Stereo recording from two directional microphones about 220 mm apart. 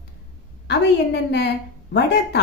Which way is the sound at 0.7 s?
50° left (ahead or behind).